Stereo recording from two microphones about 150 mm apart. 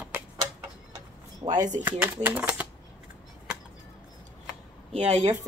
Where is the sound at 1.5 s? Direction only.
55° right (ahead or behind).